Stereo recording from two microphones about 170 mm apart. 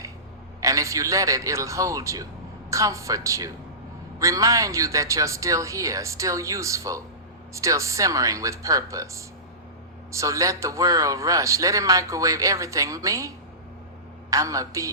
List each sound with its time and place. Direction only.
0.6 s a man's voice: 20° right (ahead or behind)